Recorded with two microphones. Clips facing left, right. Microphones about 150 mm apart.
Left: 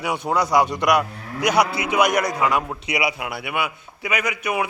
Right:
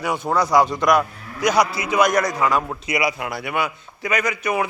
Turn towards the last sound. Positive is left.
turn(degrees=10)  # may be behind; listen again after turning